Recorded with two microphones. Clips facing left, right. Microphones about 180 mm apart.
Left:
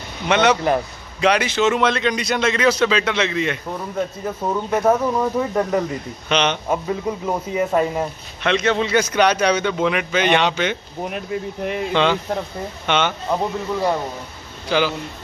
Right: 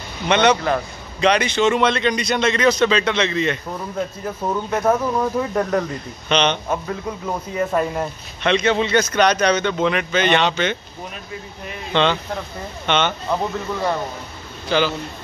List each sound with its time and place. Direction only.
0.3 s a man's voice: 5° left (ahead or behind)
11.1 s speech: 65° left (ahead or behind)
11.9 s speech: 10° left (ahead or behind)
14.7 s speech: 10° left (ahead or behind)